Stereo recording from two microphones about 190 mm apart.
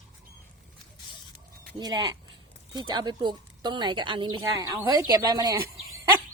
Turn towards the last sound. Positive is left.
turn(degrees=-20)  # may be behind; listen again after turning